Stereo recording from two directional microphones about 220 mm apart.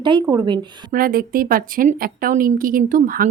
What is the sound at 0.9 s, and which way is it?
A woman's voice, 40° right (ahead or behind).